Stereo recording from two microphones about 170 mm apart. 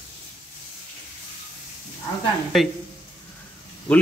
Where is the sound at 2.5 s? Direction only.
Centre (ahead or behind).